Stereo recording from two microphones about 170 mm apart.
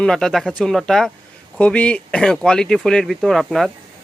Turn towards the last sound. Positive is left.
turn(degrees=0)  # may be behind; listen again after turning